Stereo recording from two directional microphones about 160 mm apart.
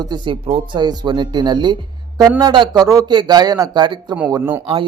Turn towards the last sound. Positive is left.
turn(degrees=-15)  # may be behind; listen again after turning